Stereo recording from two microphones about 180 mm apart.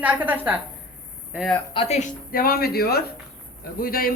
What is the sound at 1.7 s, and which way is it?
Speech, 35° left (ahead or behind).